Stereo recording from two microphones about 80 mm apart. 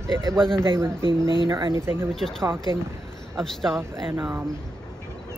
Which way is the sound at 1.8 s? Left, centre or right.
Right.